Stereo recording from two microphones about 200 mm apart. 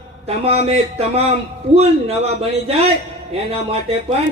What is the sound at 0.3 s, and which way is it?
A man's voice, 30° right (ahead or behind).